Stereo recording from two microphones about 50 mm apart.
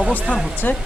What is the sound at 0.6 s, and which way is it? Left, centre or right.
Speech, left.